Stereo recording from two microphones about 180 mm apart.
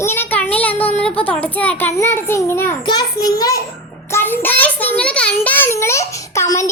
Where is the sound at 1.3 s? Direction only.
10° left (ahead or behind).